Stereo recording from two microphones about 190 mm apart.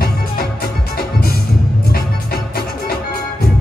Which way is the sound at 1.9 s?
55° left (ahead or behind).